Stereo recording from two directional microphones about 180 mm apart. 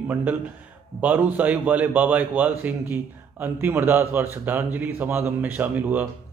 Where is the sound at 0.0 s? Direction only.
10° right (ahead or behind).